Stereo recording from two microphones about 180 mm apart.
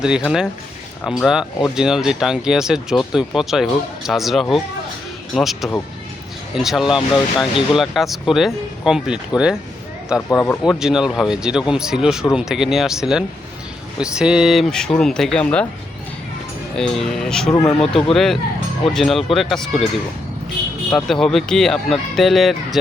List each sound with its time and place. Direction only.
0.0 s speech: 5° right (ahead or behind)
10.2 s speech: 15° left (ahead or behind)
10.7 s speech: 5° right (ahead or behind)
16.7 s speech: 5° left (ahead or behind)
17.5 s speech: 15° left (ahead or behind)
17.7 s speech: centre (ahead or behind)
20.9 s speech: 5° left (ahead or behind)